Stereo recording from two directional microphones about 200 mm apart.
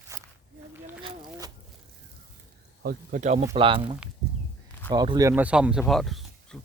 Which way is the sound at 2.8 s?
40° right (ahead or behind).